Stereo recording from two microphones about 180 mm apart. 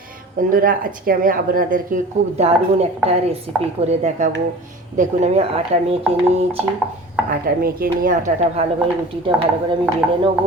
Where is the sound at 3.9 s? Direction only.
40° right (ahead or behind).